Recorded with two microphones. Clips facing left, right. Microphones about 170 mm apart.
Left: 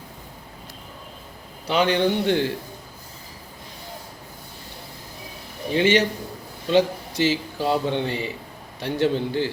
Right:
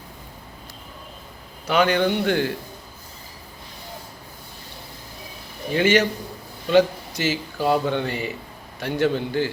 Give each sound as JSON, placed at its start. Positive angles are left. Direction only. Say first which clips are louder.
{"t": 1.6, "sound": "a man's voice", "louder": "right 1 dB", "side_deg": 30}
{"t": 5.7, "sound": "a man's voice", "louder": "even", "side_deg": 30}